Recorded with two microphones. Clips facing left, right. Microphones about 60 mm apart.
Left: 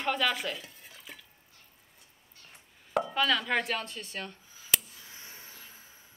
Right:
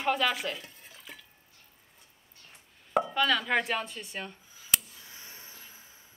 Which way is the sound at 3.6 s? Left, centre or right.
Centre.